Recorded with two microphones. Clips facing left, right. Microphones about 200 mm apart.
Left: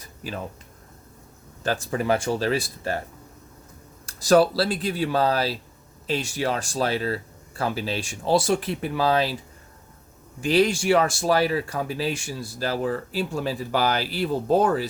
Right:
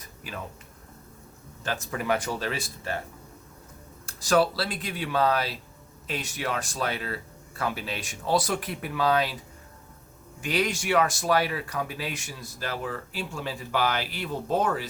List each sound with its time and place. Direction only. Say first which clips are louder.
1.6 s speech: left 5 dB; 35° left (ahead or behind)
4.0 s speech: left 5 dB; 35° left (ahead or behind)
10.4 s speech: left 7 dB; 30° left (ahead or behind)